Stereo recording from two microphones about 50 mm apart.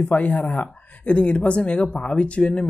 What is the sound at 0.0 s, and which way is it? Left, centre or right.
Speech, left.